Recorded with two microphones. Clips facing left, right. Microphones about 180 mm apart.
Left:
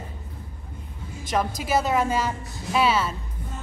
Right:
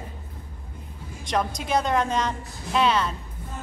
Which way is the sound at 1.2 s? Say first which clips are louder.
Left 1 dB; 5° left (ahead or behind).